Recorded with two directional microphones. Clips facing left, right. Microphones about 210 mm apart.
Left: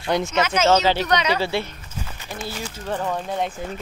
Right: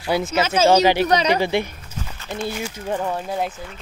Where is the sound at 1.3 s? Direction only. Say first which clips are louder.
Right 3 dB; 15° right (ahead or behind).